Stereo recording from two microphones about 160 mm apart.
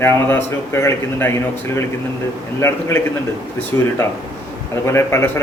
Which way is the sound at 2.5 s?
15° left (ahead or behind).